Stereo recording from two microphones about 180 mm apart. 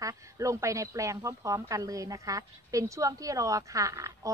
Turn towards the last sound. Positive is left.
turn(degrees=-20)  # may be behind; listen again after turning